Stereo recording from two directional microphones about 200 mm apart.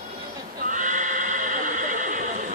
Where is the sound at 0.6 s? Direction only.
40° right (ahead or behind).